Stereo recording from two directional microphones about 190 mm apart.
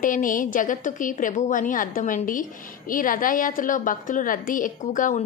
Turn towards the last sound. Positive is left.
turn(degrees=45)  # may be behind; listen again after turning